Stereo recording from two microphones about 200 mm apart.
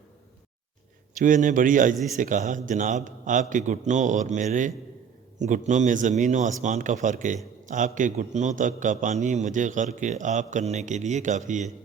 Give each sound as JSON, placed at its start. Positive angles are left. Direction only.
{"t": 1.2, "sound": "a man's voice", "side_deg": -40}